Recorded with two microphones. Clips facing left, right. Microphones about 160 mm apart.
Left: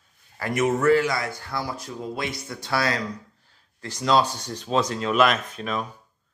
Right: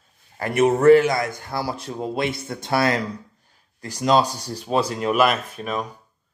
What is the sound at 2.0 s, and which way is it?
Speech, 60° right (ahead or behind).